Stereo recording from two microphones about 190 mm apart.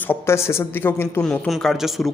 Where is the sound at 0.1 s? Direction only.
15° left (ahead or behind).